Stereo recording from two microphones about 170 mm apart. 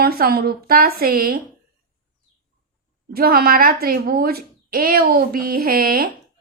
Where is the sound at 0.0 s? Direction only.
60° right (ahead or behind).